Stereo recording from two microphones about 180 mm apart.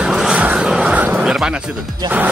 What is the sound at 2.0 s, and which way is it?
Music, 25° right (ahead or behind).